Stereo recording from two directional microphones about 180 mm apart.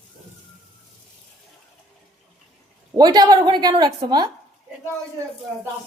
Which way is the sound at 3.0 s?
25° right (ahead or behind).